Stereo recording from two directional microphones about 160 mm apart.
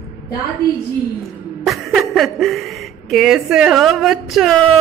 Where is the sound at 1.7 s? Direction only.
Centre (ahead or behind).